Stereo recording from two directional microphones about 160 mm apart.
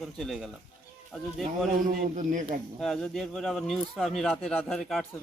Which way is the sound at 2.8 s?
Centre (ahead or behind).